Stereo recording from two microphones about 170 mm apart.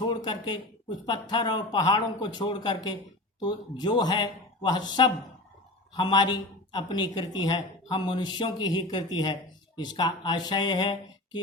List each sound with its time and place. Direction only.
0.0 s speech: 25° left (ahead or behind)